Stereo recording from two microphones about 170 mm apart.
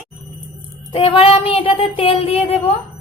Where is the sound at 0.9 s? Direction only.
35° left (ahead or behind).